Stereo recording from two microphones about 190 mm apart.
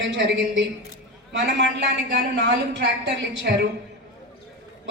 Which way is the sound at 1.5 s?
60° right (ahead or behind).